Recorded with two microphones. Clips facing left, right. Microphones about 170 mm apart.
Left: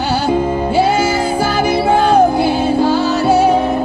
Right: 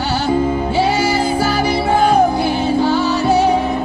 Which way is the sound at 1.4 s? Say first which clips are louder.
Left 2 dB; 10° left (ahead or behind).